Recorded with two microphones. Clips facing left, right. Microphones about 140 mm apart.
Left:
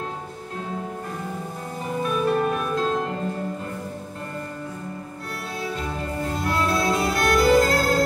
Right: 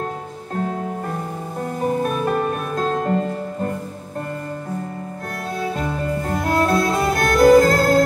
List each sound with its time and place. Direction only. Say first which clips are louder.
1.8 s music: right 4 dB; 45° right (ahead or behind)
5.6 s music: right 5 dB; 50° right (ahead or behind)